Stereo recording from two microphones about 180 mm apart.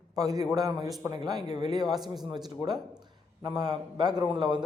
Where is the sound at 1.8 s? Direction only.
Centre (ahead or behind).